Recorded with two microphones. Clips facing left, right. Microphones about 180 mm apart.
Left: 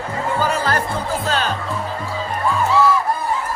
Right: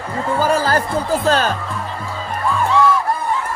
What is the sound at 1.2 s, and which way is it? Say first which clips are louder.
Speech: right 6 dB; 40° right (ahead or behind).